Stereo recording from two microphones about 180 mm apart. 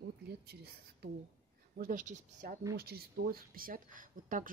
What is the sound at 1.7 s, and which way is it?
Speech, 50° right (ahead or behind).